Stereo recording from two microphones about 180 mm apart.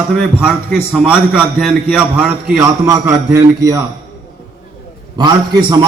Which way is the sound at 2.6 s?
15° right (ahead or behind).